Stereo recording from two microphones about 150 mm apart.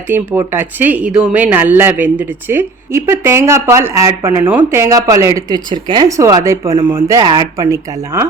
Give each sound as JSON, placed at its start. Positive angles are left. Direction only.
{"t": 0.1, "sound": "speech", "side_deg": -15}